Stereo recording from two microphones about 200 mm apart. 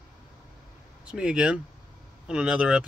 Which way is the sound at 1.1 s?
5° right (ahead or behind).